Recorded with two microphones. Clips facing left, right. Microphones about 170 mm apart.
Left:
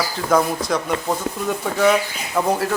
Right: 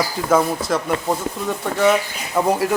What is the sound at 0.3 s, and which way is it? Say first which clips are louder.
Speech: even; 5° right (ahead or behind).